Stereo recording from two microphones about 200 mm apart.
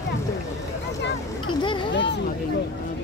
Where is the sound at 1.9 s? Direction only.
65° left (ahead or behind).